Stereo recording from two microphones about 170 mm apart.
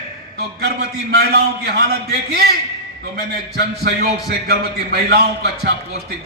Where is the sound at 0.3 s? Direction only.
70° right (ahead or behind).